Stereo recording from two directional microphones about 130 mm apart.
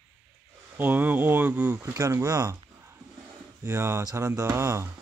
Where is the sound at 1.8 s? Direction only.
25° right (ahead or behind).